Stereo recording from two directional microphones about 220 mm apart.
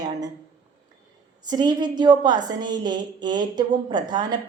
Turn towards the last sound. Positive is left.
turn(degrees=-20)  # may be behind; listen again after turning